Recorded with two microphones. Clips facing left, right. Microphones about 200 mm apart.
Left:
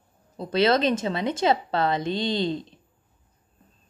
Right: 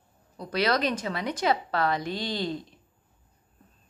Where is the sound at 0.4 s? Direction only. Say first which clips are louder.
Left 5 dB; 25° left (ahead or behind).